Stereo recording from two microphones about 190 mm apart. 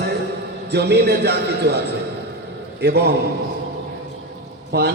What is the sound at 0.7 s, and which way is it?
A man's voice, 60° right (ahead or behind).